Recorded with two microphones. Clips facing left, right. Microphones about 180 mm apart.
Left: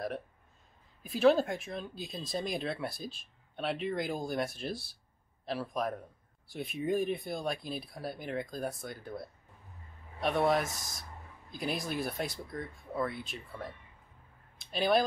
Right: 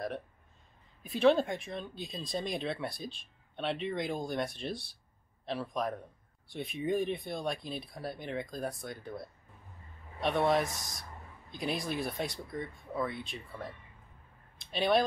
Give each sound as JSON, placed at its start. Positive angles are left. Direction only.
{"t": 1.0, "sound": "speech", "side_deg": 0}